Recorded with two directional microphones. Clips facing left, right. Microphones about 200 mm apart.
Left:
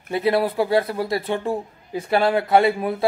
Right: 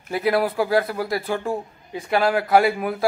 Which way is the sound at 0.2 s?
Centre (ahead or behind).